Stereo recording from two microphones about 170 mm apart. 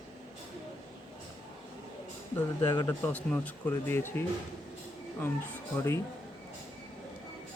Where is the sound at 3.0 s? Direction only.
10° left (ahead or behind).